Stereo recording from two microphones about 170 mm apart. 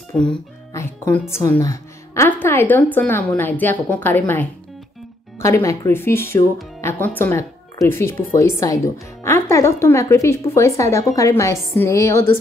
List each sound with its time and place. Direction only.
0.1 s a child's voice: 5° left (ahead or behind)
0.7 s speech: 15° left (ahead or behind)
1.6 s music: 15° left (ahead or behind)
2.4 s speech: 10° left (ahead or behind)